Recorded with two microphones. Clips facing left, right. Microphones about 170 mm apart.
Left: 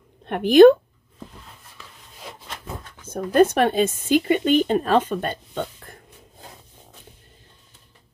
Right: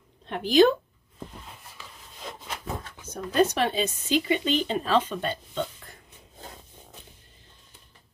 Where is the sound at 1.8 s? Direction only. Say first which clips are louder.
Left 2 dB; centre (ahead or behind).